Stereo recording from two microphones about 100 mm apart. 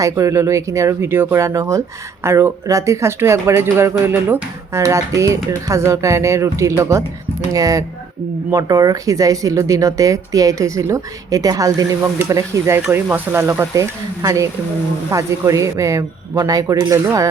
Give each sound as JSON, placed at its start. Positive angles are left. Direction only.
{"t": 0.0, "sound": "speech", "side_deg": -30}